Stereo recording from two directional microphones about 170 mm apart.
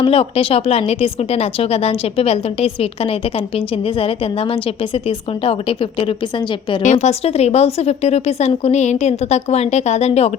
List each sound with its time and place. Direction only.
0.0 s speech: 35° left (ahead or behind)